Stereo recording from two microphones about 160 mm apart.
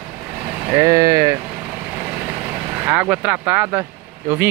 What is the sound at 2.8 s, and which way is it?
Speech, 10° right (ahead or behind).